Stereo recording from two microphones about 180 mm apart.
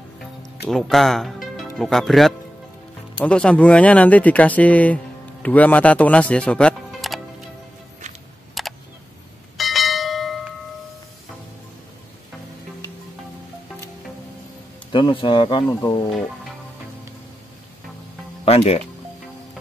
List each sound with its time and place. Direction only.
0.7 s speech: centre (ahead or behind)
8.6 s camera: centre (ahead or behind)
9.6 s bell: centre (ahead or behind)
14.9 s a man's voice: 25° left (ahead or behind)
18.4 s speech: 35° left (ahead or behind)